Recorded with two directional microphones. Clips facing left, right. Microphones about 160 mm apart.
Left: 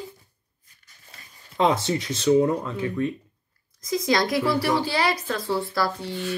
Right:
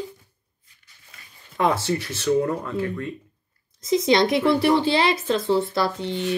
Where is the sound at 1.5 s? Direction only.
20° left (ahead or behind).